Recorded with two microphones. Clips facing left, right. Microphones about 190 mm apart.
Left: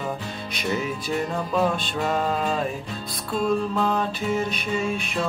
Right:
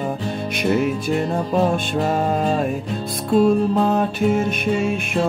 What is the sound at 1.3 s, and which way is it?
Music, 35° right (ahead or behind).